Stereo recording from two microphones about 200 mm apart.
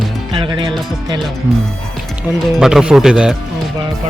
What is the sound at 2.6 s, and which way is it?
Speech, 5° right (ahead or behind).